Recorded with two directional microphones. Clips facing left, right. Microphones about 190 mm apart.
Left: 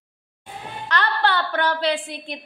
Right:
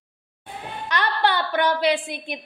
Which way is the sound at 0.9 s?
15° right (ahead or behind).